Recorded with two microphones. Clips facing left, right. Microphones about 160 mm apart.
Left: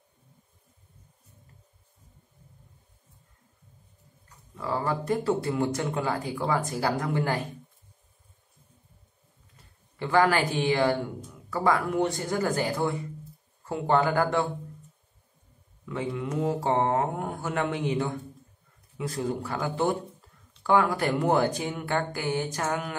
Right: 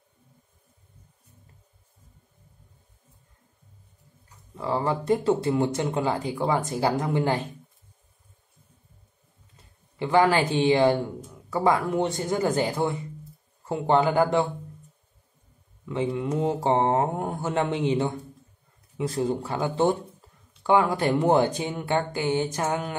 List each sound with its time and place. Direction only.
4.6 s speech: 20° right (ahead or behind)
9.9 s speech: 20° right (ahead or behind)
15.8 s speech: 25° right (ahead or behind)